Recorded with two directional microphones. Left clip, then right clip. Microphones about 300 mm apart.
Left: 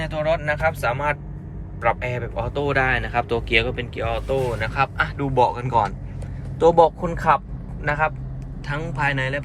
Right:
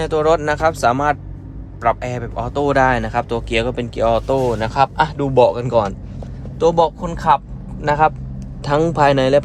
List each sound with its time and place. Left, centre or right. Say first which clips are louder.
0.4 s speech: right 6 dB; centre